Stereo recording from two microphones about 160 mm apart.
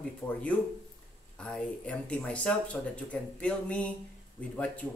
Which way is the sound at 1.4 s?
5° left (ahead or behind).